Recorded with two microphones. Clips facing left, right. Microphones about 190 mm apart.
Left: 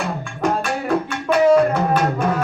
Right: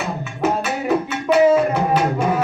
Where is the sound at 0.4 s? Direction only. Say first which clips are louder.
Right 1 dB; 5° right (ahead or behind).